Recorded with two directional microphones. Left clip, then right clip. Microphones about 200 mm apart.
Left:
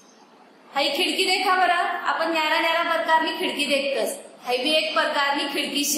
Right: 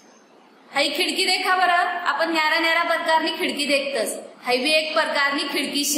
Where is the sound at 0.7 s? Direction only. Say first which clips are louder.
Right 1 dB; 35° right (ahead or behind).